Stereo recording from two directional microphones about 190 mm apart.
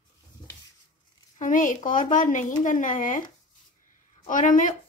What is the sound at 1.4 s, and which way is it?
Speech, 45° left (ahead or behind).